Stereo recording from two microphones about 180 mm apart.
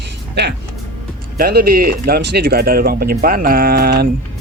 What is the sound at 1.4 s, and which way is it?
Speech, 55° right (ahead or behind).